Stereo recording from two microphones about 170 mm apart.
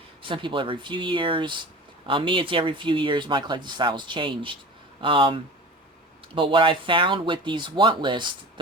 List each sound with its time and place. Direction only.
0.2 s speech: 30° right (ahead or behind)
6.3 s speech: 30° right (ahead or behind)